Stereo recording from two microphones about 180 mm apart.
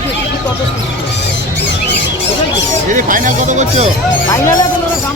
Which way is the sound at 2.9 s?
50° right (ahead or behind).